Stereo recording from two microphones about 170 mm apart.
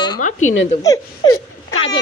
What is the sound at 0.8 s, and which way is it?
Speech, 20° left (ahead or behind).